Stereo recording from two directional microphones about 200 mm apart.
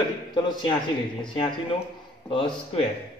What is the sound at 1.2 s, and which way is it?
Speech, 25° left (ahead or behind).